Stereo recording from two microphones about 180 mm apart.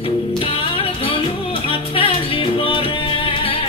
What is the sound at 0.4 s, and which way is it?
Music, 30° left (ahead or behind).